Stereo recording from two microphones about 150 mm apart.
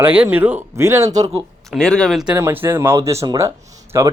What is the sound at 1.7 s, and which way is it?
Speech, 5° left (ahead or behind).